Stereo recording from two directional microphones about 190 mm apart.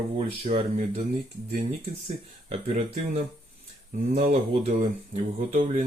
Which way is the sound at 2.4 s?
35° right (ahead or behind).